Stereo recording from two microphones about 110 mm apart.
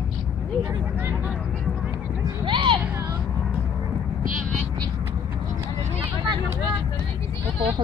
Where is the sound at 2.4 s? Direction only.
50° right (ahead or behind).